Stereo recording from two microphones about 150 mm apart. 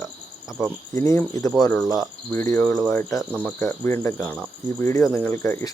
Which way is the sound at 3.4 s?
15° left (ahead or behind).